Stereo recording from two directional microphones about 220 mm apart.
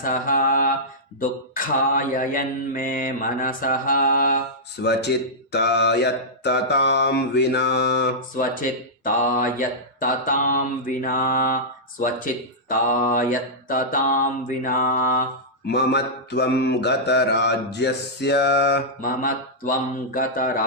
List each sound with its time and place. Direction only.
0.0 s mantra: 40° left (ahead or behind)
4.8 s mantra: 50° left (ahead or behind)
9.0 s mantra: 40° left (ahead or behind)
15.6 s mantra: 50° left (ahead or behind)